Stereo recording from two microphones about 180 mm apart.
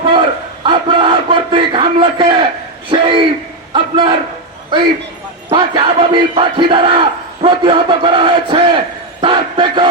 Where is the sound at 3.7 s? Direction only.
25° right (ahead or behind).